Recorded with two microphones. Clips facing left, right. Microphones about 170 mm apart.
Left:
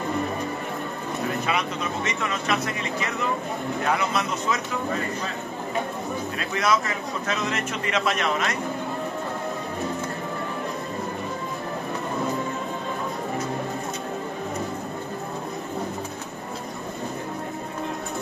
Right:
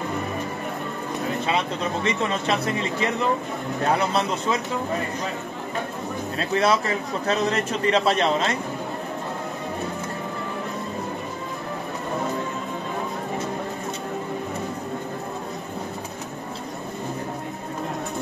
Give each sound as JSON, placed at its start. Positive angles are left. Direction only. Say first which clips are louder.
{"t": 1.4, "sound": "a man's voice", "louder": "right 2 dB", "side_deg": -30}
{"t": 6.3, "sound": "a man's voice", "louder": "right 4 dB", "side_deg": -30}